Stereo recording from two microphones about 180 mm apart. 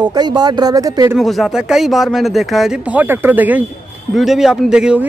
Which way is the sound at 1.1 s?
Centre (ahead or behind).